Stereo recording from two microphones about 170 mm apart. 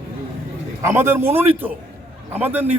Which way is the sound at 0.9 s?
15° right (ahead or behind).